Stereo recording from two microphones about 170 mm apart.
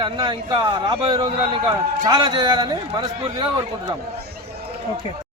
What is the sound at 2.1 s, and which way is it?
Speech, 25° right (ahead or behind).